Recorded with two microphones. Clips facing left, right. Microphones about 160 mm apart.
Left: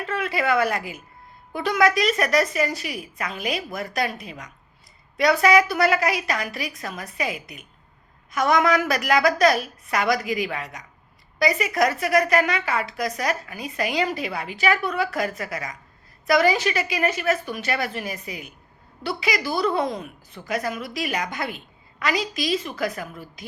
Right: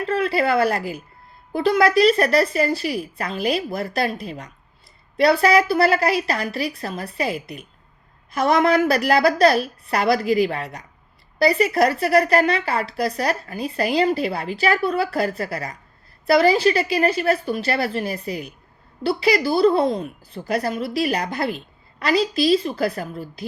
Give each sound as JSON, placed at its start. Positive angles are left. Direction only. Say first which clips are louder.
{"t": 0.0, "sound": "a woman's voice", "louder": "right 5 dB", "side_deg": -30}